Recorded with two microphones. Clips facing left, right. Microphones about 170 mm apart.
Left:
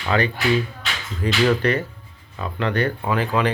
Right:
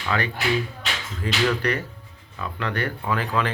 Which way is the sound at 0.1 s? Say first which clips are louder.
Left 5 dB; 30° left (ahead or behind).